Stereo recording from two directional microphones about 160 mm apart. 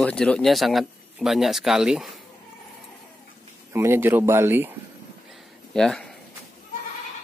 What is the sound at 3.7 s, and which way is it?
Speech, 15° right (ahead or behind).